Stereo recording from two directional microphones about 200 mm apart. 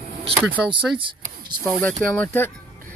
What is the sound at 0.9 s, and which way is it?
Speech, 25° right (ahead or behind).